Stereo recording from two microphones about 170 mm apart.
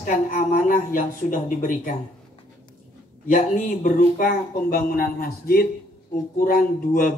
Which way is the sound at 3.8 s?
55° left (ahead or behind).